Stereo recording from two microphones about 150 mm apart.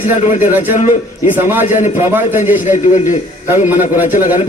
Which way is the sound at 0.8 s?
55° left (ahead or behind).